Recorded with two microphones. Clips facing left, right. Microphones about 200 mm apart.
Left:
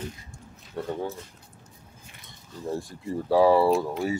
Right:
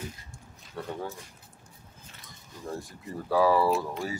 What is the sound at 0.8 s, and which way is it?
Speech, 15° left (ahead or behind).